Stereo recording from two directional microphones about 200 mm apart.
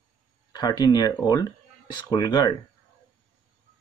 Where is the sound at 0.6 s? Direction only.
20° left (ahead or behind).